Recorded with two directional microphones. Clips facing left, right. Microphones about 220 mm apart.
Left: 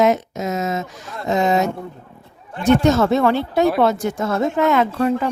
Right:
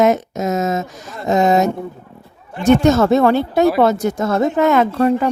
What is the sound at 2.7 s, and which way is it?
Speech, 45° right (ahead or behind).